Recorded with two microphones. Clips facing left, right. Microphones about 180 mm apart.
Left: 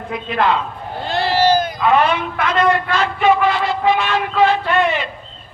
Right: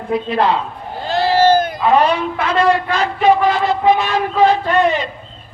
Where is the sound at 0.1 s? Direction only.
35° right (ahead or behind).